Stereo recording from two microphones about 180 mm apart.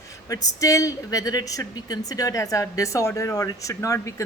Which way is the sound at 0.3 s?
20° left (ahead or behind).